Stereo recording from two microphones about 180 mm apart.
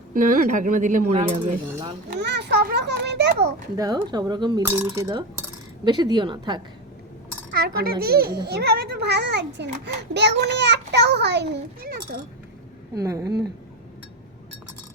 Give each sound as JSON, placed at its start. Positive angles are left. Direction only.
{"t": 0.1, "sound": "a woman's voice", "side_deg": -50}
{"t": 1.1, "sound": "cutlery", "side_deg": -35}
{"t": 2.0, "sound": "children playing", "side_deg": -70}
{"t": 3.8, "sound": "speech", "side_deg": -20}
{"t": 5.8, "sound": "speech", "side_deg": -25}
{"t": 7.5, "sound": "a child's voice", "side_deg": -60}
{"t": 12.9, "sound": "speech", "side_deg": -20}